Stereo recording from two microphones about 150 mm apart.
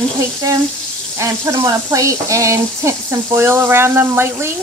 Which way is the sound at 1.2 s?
20° right (ahead or behind).